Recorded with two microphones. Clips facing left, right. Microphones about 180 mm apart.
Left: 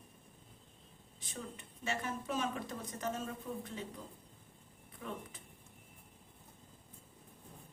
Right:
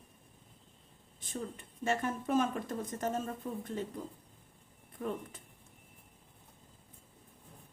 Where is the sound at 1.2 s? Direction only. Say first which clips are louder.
Right 6 dB; 50° right (ahead or behind).